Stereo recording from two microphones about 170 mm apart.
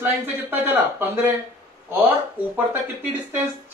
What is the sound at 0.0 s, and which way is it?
Speech, 10° right (ahead or behind).